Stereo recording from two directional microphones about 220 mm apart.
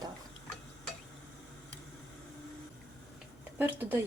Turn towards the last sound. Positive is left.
turn(degrees=-10)  # may be behind; listen again after turning